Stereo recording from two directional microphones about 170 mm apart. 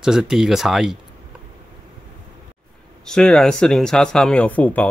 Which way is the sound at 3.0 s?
5° left (ahead or behind).